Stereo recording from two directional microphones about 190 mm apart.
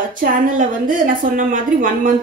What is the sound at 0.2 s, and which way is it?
A woman's voice, 45° right (ahead or behind).